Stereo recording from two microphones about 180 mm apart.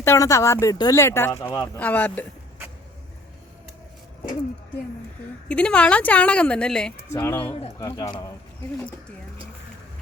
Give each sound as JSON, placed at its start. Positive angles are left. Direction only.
{"t": 0.0, "sound": "speech", "side_deg": 15}
{"t": 5.5, "sound": "speech", "side_deg": 5}